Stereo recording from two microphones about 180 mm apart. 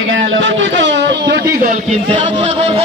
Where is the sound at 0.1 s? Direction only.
90° right; by 1.8 s 50° right (ahead or behind).